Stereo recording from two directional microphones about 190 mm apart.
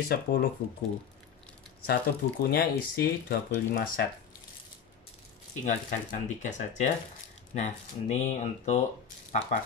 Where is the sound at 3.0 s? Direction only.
55° left (ahead or behind).